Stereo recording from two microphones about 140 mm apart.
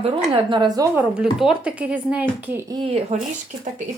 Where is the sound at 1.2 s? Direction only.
5° right (ahead or behind).